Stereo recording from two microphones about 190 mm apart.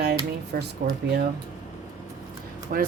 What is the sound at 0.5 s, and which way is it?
Speech, 55° right (ahead or behind).